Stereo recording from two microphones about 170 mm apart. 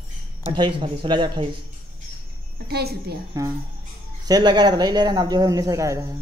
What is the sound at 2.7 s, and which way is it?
Speech, 70° right (ahead or behind).